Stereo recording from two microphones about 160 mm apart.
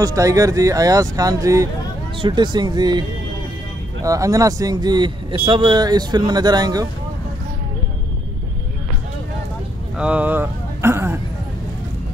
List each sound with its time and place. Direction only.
0.0 s speech: 20° right (ahead or behind)
9.9 s speech: 10° right (ahead or behind)